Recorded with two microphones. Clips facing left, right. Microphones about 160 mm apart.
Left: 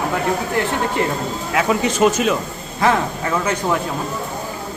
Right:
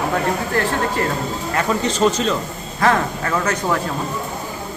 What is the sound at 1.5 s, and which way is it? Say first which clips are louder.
Speech: left 2 dB; 5° left (ahead or behind).